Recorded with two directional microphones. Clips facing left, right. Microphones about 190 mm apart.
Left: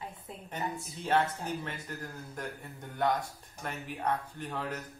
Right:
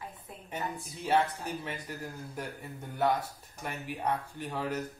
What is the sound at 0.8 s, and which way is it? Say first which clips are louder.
Speech: right 1 dB; 5° right (ahead or behind).